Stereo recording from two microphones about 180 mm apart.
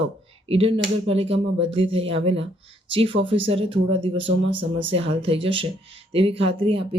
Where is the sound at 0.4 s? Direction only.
30° right (ahead or behind).